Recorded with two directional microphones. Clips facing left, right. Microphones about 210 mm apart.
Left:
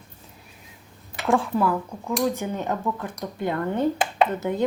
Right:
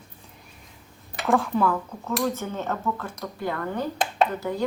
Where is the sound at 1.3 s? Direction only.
Centre (ahead or behind); by 4.7 s 20° left (ahead or behind).